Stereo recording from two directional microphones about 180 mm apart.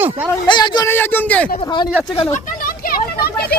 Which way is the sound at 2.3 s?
55° left (ahead or behind).